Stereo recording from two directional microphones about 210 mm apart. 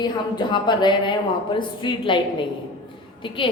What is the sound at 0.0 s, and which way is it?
A woman's voice, 20° left (ahead or behind).